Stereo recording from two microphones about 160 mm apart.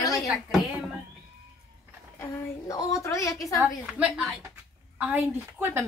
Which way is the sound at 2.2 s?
20° left (ahead or behind).